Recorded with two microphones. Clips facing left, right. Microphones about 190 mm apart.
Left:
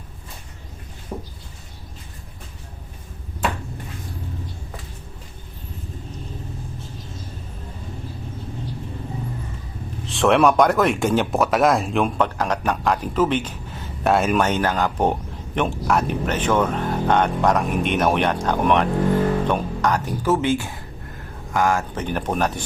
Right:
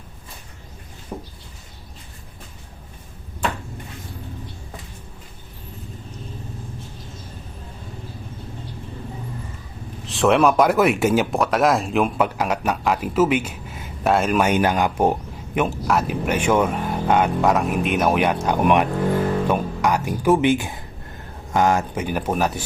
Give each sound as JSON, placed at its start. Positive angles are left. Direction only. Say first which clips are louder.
{"t": 1.1, "sound": "a sound", "louder": "left 1 dB", "side_deg": 0}
{"t": 10.1, "sound": "speech", "louder": "even", "side_deg": 0}
{"t": 14.4, "sound": "speech", "louder": "right 2 dB", "side_deg": -15}
{"t": 21.9, "sound": "speech", "louder": "right 1 dB", "side_deg": -10}